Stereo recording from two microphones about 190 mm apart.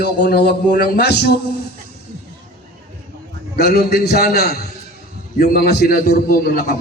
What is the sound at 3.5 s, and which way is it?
A man's voice, 55° left (ahead or behind).